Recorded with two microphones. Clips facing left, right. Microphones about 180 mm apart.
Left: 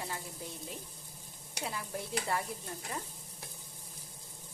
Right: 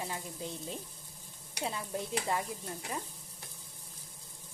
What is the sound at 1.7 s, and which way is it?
Stir, 20° right (ahead or behind).